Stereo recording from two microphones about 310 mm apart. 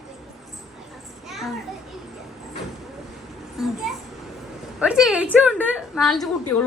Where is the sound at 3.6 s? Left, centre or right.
Centre.